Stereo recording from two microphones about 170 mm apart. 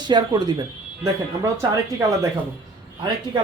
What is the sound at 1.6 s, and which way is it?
Speech, 15° right (ahead or behind).